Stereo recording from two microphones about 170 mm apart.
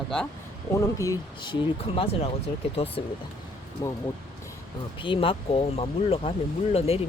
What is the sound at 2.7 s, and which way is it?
Speech, 35° left (ahead or behind).